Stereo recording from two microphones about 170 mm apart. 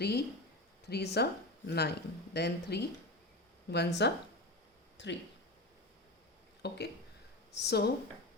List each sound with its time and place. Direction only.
0.0 s speech: 70° left (ahead or behind)
5.0 s speech: 90° left
6.6 s speech: 80° left